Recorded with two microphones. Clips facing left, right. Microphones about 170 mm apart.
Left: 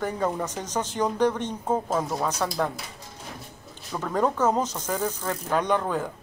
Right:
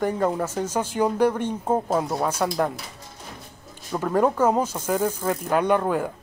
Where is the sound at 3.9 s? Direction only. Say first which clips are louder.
Right 4 dB; 10° right (ahead or behind).